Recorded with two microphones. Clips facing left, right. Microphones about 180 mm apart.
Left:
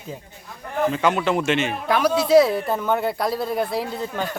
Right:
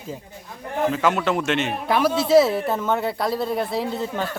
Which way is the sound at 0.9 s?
Centre (ahead or behind).